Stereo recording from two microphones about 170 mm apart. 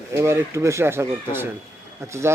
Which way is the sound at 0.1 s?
15° right (ahead or behind).